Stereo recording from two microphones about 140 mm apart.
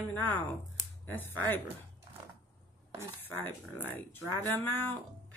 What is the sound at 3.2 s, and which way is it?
Speech, 15° left (ahead or behind).